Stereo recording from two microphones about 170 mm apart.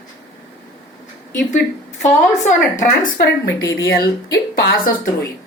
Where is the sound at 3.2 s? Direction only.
70° left (ahead or behind).